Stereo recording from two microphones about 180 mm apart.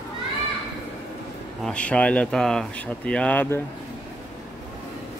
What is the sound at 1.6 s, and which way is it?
Speech, 5° left (ahead or behind).